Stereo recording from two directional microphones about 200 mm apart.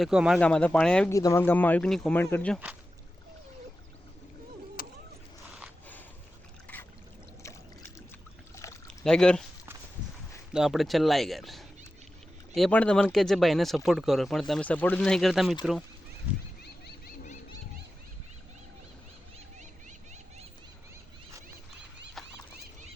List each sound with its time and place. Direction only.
0.0 s speech: 5° right (ahead or behind)
1.1 s speech: 15° left (ahead or behind)
4.8 s vehicle: 45° left (ahead or behind)
8.6 s pour: 15° left (ahead or behind)
9.0 s speech: 5° left (ahead or behind)
10.5 s speech: centre (ahead or behind)
22.2 s horse: centre (ahead or behind)